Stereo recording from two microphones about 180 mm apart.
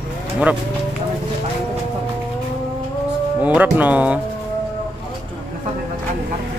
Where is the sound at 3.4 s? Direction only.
10° right (ahead or behind).